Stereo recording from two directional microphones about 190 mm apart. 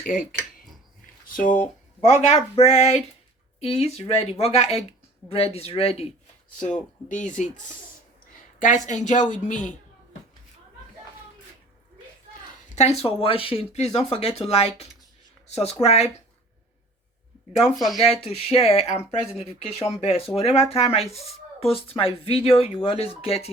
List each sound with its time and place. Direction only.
0.0 s cutlery: 45° left (ahead or behind)
1.4 s cutlery: 45° left (ahead or behind)
2.0 s speech: 35° left (ahead or behind)
7.1 s speech: 40° left (ahead or behind)
12.7 s speech: 35° left (ahead or behind)
17.7 s speech: centre (ahead or behind)
18.0 s speech: 30° left (ahead or behind)